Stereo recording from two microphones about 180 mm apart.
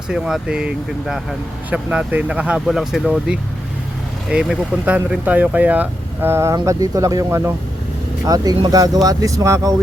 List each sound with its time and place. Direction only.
0.1 s speech: 5° right (ahead or behind)